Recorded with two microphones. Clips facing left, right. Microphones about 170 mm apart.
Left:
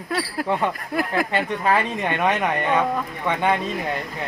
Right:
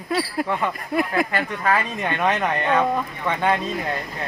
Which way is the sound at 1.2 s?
20° left (ahead or behind).